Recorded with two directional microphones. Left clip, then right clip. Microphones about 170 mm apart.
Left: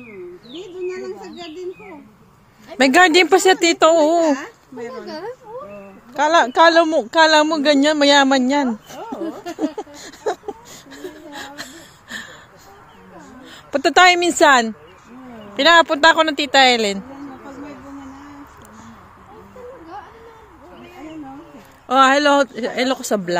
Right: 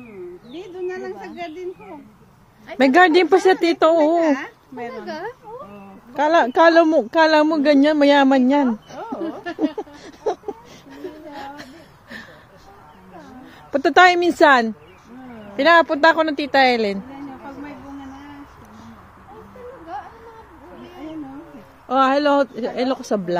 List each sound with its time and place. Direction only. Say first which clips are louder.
0.5 s bird: left 1 dB; 10° right (ahead or behind)
2.8 s speech: left 1 dB; 5° right (ahead or behind)
6.1 s a woman's voice: left 2 dB; 20° right (ahead or behind)
7.1 s speech: left 2 dB; 20° right (ahead or behind)
9.6 s a sound: right 1 dB; 10° right (ahead or behind)
13.7 s speech: left 1 dB; 10° right (ahead or behind)
21.8 s speech: left 3 dB; 5° left (ahead or behind)